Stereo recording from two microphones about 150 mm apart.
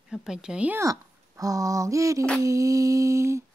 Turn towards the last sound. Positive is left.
turn(degrees=-20)  # may be behind; listen again after turning